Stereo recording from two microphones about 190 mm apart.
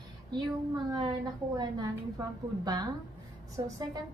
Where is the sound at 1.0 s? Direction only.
20° right (ahead or behind).